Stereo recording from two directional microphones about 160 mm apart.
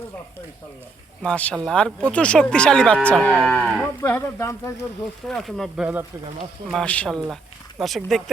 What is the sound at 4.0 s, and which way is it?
Speech, 15° left (ahead or behind).